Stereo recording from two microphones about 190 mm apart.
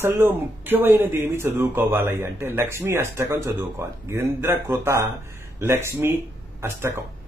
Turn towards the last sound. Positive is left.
turn(degrees=-15)  # may be behind; listen again after turning